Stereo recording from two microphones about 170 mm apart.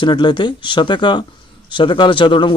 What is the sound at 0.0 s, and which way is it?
A man's voice, 30° left (ahead or behind).